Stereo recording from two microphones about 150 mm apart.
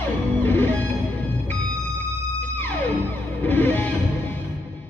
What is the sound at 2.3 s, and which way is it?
Music, 10° left (ahead or behind).